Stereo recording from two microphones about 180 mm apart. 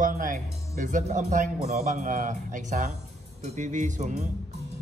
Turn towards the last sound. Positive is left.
turn(degrees=-40)  # may be behind; listen again after turning